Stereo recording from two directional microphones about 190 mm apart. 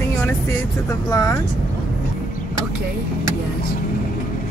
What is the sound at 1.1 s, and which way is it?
Speech, 20° left (ahead or behind).